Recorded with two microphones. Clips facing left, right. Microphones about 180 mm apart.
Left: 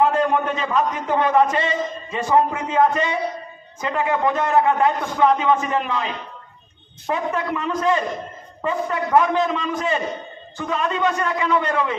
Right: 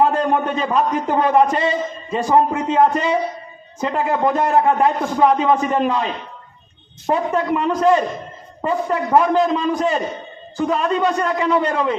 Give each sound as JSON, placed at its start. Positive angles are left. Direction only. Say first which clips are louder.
{"t": 0.0, "sound": "a man's voice", "louder": "right 1 dB", "side_deg": -35}
{"t": 7.1, "sound": "a man's voice", "louder": "right 5 dB", "side_deg": -35}